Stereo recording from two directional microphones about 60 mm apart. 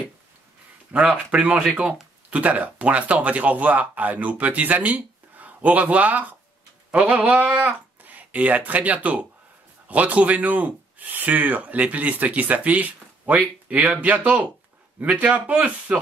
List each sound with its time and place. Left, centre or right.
1.1 s speech: right